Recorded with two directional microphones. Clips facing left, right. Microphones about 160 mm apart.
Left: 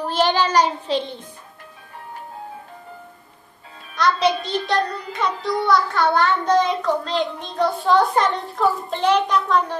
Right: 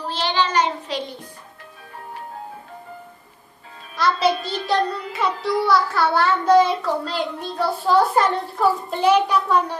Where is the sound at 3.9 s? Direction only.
5° right (ahead or behind).